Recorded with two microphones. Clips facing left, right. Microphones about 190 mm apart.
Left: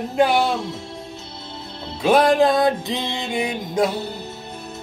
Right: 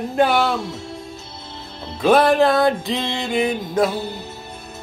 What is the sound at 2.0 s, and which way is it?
Music, 15° left (ahead or behind).